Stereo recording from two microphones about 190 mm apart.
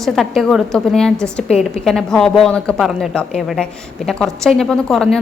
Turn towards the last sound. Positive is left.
turn(degrees=0)  # may be behind; listen again after turning